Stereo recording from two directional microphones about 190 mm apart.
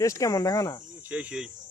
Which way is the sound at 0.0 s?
15° left (ahead or behind).